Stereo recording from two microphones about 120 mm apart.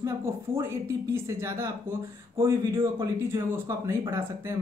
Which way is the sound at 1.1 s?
20° right (ahead or behind).